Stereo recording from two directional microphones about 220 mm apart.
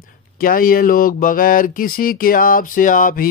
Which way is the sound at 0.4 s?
40° left (ahead or behind).